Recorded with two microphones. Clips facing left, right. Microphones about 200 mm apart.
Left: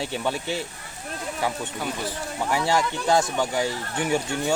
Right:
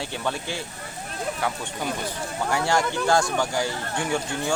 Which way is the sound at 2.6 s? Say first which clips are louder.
Right 1 dB; 5° left (ahead or behind).